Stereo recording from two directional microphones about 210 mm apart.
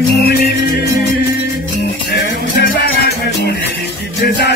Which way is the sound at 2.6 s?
50° left (ahead or behind).